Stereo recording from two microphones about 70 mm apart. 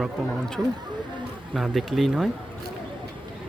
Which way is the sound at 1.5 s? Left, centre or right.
Centre.